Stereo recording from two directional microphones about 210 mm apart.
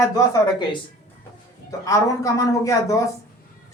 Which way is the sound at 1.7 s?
15° left (ahead or behind).